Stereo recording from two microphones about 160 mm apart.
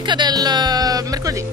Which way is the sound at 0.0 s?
30° right (ahead or behind).